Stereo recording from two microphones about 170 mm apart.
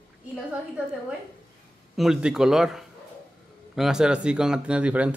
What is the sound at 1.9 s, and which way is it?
Speech, centre (ahead or behind).